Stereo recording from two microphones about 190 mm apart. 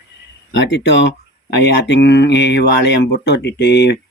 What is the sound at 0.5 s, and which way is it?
Speech, 70° left (ahead or behind).